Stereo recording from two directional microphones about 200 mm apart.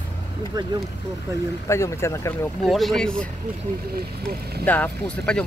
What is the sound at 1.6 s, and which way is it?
Speech, 15° left (ahead or behind).